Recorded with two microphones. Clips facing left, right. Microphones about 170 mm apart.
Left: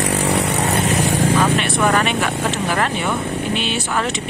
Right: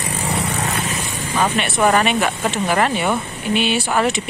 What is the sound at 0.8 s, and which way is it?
Vehicle, 70° left (ahead or behind).